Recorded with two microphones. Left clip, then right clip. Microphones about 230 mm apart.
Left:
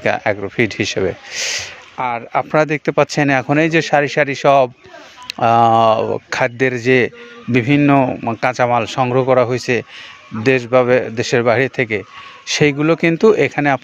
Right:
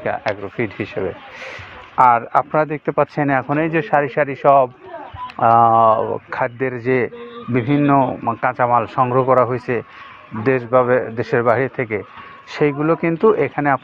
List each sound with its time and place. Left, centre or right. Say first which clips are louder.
0.0 s speech: left 5 dB; left
2.0 s speech: right 8 dB; centre
2.3 s a man's voice: left 2 dB; left